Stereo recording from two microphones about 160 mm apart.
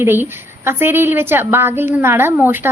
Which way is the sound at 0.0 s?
15° right (ahead or behind).